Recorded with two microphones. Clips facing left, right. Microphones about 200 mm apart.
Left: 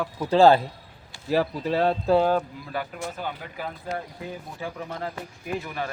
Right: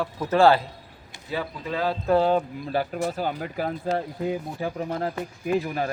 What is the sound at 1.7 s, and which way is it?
Speech, 30° left (ahead or behind).